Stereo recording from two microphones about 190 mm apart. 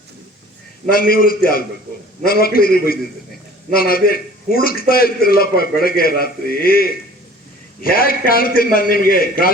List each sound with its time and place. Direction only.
0.9 s a man's voice: 50° left (ahead or behind)